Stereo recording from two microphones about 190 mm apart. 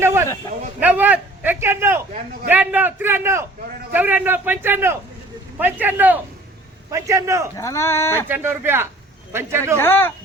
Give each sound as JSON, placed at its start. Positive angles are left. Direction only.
{"t": 0.0, "sound": "a sound", "side_deg": -15}
{"t": 0.8, "sound": "a man's voice", "side_deg": -10}
{"t": 7.5, "sound": "speech", "side_deg": 15}
{"t": 8.3, "sound": "a man's voice", "side_deg": -10}
{"t": 9.7, "sound": "speech", "side_deg": 10}